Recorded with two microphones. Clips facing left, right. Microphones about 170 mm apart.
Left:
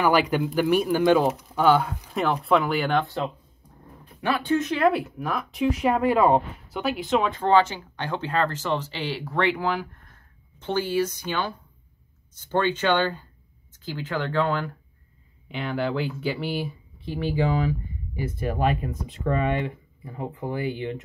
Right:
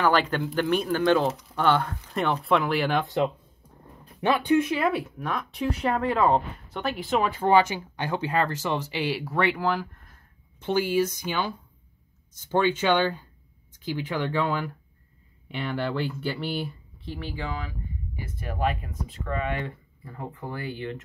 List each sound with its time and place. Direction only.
0.0 s speech: 10° left (ahead or behind)
4.2 s speech: 20° right (ahead or behind); by 9.8 s centre (ahead or behind)
10.6 s speech: 10° right (ahead or behind); by 19.5 s 25° left (ahead or behind)
19.6 s speech: 15° left (ahead or behind)